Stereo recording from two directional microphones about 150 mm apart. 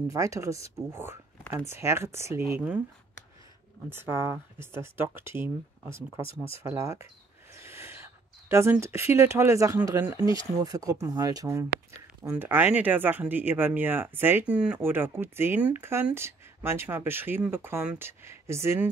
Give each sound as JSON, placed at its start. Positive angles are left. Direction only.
{"t": 0.1, "sound": "speech", "side_deg": -20}
{"t": 3.9, "sound": "speech", "side_deg": -15}